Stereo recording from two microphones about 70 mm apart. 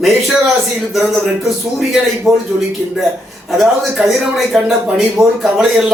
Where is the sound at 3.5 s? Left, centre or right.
Centre.